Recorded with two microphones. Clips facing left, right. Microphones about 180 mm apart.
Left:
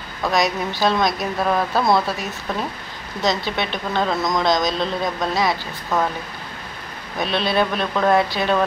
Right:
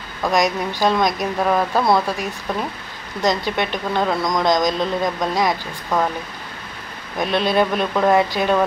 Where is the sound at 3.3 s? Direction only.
15° right (ahead or behind).